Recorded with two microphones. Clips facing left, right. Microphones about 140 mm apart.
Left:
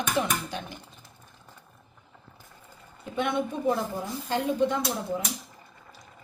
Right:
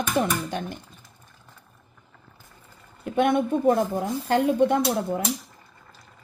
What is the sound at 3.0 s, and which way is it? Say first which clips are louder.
Speech: right 7 dB; 55° right (ahead or behind).